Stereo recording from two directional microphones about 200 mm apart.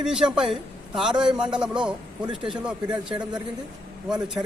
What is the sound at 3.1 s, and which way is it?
Speech, 20° right (ahead or behind).